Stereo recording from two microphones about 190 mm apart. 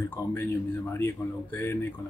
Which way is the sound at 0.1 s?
10° left (ahead or behind).